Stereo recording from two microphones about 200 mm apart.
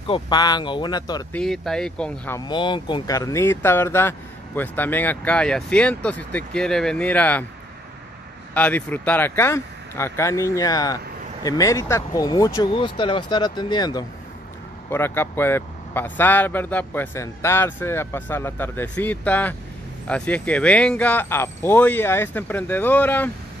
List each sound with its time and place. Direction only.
0.0 s speech: 25° left (ahead or behind)
1.3 s speech: centre (ahead or behind)
2.4 s speech: 25° left (ahead or behind); by 7.4 s 10° left (ahead or behind)
8.5 s speech: 10° left (ahead or behind)